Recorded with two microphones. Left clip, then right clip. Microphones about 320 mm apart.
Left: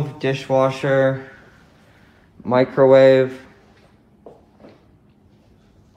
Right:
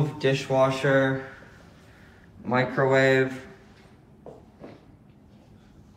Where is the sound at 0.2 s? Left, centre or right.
Centre.